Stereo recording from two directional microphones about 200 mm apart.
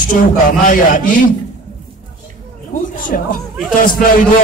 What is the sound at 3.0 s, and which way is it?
Speech, 45° left (ahead or behind).